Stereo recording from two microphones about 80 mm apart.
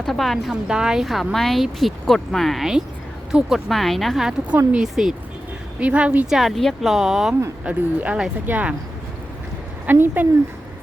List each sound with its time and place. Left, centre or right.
0.0 s a woman's voice: centre
0.7 s a woman's voice: centre
5.8 s speech: centre
6.2 s a woman's voice: centre
7.6 s a woman's voice: centre
9.8 s a woman's voice: right